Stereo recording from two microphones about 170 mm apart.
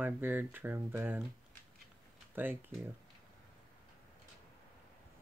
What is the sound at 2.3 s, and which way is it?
Speech, 10° right (ahead or behind).